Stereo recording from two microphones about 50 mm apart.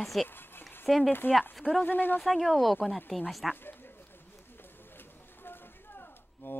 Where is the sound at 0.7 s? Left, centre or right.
Centre.